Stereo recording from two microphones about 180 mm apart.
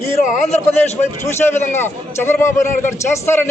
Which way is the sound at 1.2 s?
15° left (ahead or behind).